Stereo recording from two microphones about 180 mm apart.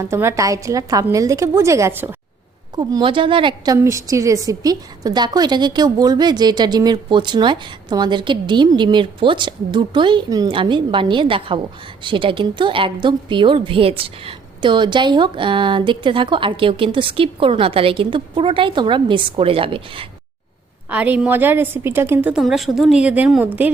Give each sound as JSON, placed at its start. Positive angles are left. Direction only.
{"t": 0.0, "sound": "a woman's voice", "side_deg": -15}
{"t": 2.7, "sound": "a woman's voice", "side_deg": -25}
{"t": 3.8, "sound": "a woman's voice", "side_deg": -15}
{"t": 20.9, "sound": "a woman's voice", "side_deg": -10}